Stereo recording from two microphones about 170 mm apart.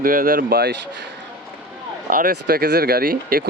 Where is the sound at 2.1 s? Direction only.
60° right (ahead or behind).